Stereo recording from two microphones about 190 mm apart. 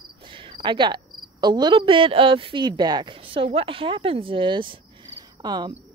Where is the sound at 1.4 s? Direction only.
25° right (ahead or behind).